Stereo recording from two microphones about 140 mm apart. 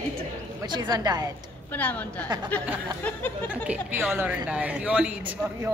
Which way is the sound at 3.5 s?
10° right (ahead or behind).